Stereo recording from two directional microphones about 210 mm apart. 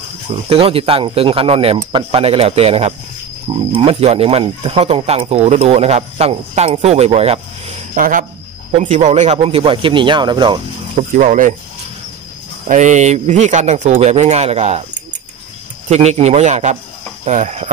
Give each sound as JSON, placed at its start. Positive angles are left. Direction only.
{"t": 0.5, "sound": "speech", "side_deg": -25}
{"t": 7.9, "sound": "speech", "side_deg": -40}
{"t": 11.1, "sound": "speech", "side_deg": -40}
{"t": 12.6, "sound": "speech", "side_deg": -35}
{"t": 15.9, "sound": "speech", "side_deg": -30}